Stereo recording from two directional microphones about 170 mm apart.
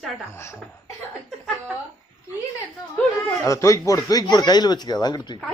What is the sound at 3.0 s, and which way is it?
Speech, 15° left (ahead or behind).